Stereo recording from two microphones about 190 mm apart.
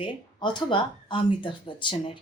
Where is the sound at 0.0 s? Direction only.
25° left (ahead or behind).